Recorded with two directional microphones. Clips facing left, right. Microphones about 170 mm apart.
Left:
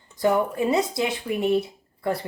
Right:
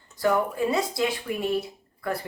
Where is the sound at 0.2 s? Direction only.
20° left (ahead or behind).